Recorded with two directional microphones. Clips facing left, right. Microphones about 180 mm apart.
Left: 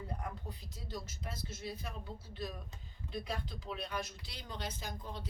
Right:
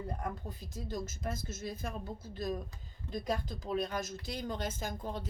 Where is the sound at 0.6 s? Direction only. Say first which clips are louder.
Right 9 dB; 45° right (ahead or behind).